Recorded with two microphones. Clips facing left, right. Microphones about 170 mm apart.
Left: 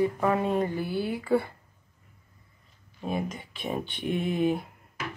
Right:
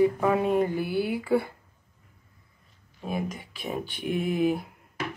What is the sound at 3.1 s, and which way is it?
Speech, 5° right (ahead or behind).